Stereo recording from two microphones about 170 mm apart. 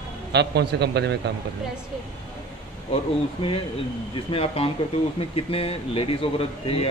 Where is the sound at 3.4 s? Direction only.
35° left (ahead or behind).